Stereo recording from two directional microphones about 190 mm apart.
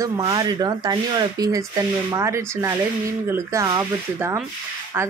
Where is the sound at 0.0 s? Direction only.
20° right (ahead or behind).